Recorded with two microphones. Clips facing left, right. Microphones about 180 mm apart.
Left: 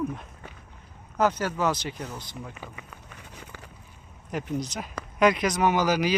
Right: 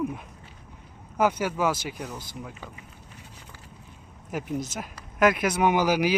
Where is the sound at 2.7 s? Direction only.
70° left (ahead or behind).